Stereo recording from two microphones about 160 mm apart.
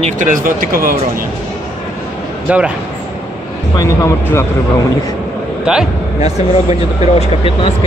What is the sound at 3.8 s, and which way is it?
Speech, 15° left (ahead or behind).